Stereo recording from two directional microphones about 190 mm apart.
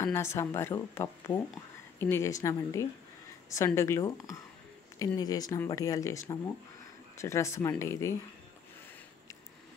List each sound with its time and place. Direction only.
0.0 s speech: 15° left (ahead or behind)